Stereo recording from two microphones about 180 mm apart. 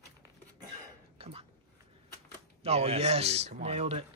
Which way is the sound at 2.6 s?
35° right (ahead or behind).